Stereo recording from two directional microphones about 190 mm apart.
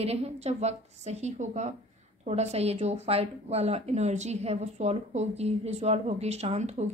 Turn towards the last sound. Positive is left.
turn(degrees=-35)  # may be behind; listen again after turning